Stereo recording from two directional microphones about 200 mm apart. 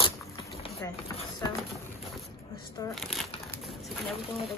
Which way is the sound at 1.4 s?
20° left (ahead or behind).